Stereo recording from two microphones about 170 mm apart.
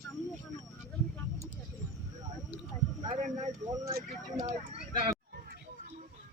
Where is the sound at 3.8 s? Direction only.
20° right (ahead or behind).